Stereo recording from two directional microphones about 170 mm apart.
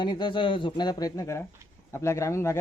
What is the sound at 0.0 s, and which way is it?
A man's voice, 25° left (ahead or behind).